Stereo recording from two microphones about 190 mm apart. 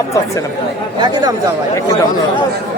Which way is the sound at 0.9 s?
25° right (ahead or behind).